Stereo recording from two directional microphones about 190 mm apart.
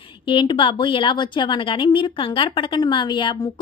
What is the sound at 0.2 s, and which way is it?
A woman's voice, 25° left (ahead or behind).